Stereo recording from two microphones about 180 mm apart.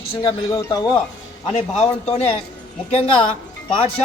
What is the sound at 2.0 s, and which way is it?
Speech, 35° left (ahead or behind).